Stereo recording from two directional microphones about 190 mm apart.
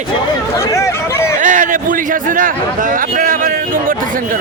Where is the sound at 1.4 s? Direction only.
40° right (ahead or behind).